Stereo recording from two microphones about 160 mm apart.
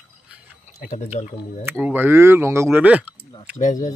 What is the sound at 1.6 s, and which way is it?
Speech, 10° right (ahead or behind).